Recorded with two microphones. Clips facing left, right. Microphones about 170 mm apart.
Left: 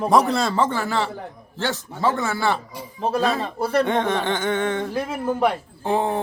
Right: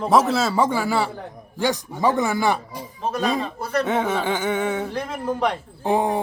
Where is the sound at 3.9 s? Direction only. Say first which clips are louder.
Even; 5° right (ahead or behind).